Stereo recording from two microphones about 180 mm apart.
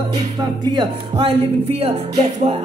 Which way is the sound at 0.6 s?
25° right (ahead or behind).